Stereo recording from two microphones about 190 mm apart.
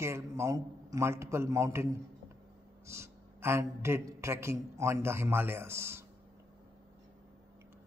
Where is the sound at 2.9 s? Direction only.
15° right (ahead or behind).